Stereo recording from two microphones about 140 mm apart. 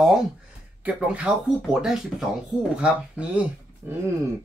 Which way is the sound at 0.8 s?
10° right (ahead or behind).